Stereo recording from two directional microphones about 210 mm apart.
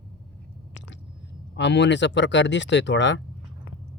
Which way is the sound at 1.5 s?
60° left (ahead or behind).